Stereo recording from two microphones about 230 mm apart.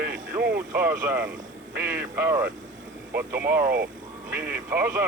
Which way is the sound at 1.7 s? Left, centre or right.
Centre.